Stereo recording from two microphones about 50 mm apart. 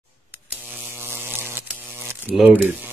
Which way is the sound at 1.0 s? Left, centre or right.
Right.